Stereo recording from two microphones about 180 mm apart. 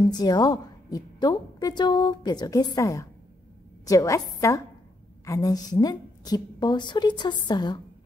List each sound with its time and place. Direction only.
0.1 s a woman's voice: 20° left (ahead or behind)